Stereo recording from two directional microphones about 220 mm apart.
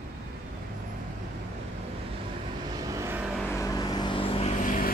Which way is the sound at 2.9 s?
10° right (ahead or behind).